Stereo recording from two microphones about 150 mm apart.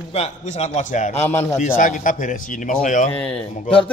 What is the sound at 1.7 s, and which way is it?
A man's voice, 65° left (ahead or behind).